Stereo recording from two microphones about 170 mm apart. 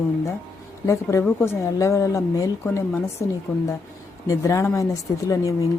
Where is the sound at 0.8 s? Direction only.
15° left (ahead or behind).